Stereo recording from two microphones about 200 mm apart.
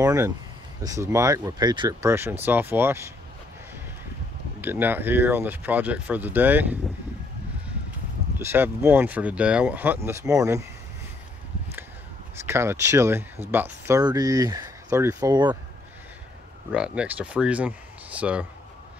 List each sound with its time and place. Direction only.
0.0 s speech: 15° right (ahead or behind)
4.6 s speech: 10° right (ahead or behind)
8.5 s speech: 10° right (ahead or behind)
12.4 s speech: 15° right (ahead or behind)
16.7 s speech: 5° right (ahead or behind)